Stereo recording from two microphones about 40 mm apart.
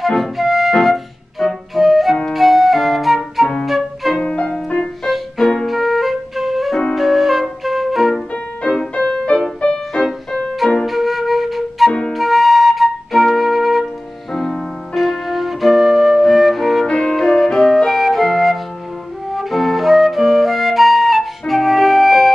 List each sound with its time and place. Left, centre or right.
0.0 s flute: centre
3.6 s music: centre
4.2 s music: left
5.0 s music: centre
5.7 s flute: centre
7.0 s music: centre
8.6 s music: left
10.9 s flute: centre
14.3 s music: centre
16.8 s music: centre
19.3 s flute: centre